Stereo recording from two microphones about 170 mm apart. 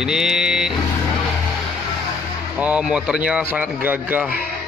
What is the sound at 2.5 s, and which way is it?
Speech, 5° right (ahead or behind).